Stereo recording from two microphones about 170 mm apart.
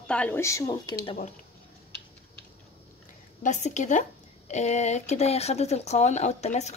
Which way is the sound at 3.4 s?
45° left (ahead or behind).